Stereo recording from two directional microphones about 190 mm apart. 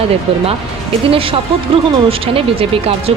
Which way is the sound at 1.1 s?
30° right (ahead or behind).